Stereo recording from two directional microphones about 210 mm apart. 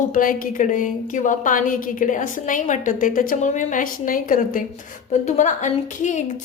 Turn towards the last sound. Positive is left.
turn(degrees=35)  # may be behind; listen again after turning